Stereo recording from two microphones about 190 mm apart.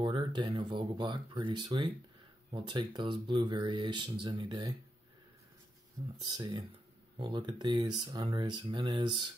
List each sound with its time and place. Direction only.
0.0 s speech: 25° right (ahead or behind)
6.2 s speech: 20° right (ahead or behind)